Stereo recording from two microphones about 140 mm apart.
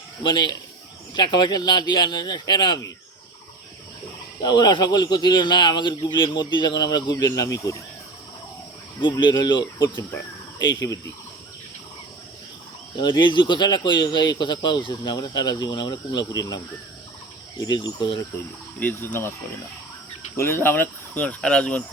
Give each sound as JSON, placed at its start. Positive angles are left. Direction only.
{"t": 0.2, "sound": "speech", "side_deg": 30}
{"t": 4.4, "sound": "speech", "side_deg": 30}
{"t": 9.0, "sound": "speech", "side_deg": 35}
{"t": 13.0, "sound": "speech", "side_deg": 35}
{"t": 17.6, "sound": "speech", "side_deg": 30}
{"t": 18.8, "sound": "speech", "side_deg": 15}
{"t": 20.3, "sound": "speech", "side_deg": 20}